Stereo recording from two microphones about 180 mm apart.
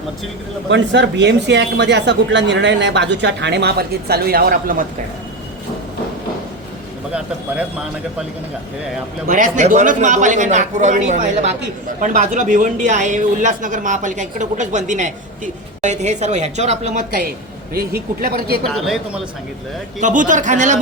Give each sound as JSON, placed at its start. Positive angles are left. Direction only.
{"t": 0.7, "sound": "speech", "side_deg": -85}
{"t": 9.2, "sound": "a woman's voice", "side_deg": -50}
{"t": 17.7, "sound": "speech", "side_deg": -60}
{"t": 18.6, "sound": "a man's voice", "side_deg": 0}
{"t": 20.0, "sound": "speech", "side_deg": -45}